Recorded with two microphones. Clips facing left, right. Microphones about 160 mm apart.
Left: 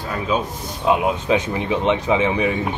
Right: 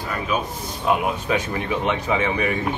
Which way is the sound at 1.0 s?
20° left (ahead or behind).